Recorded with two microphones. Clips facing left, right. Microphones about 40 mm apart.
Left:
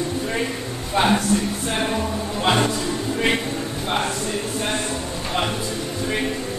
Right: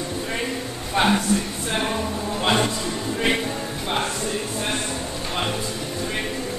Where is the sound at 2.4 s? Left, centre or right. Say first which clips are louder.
Left 2 dB; centre.